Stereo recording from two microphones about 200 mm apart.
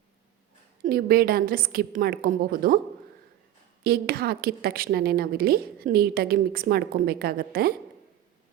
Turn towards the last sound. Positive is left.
turn(degrees=-50)  # may be behind; listen again after turning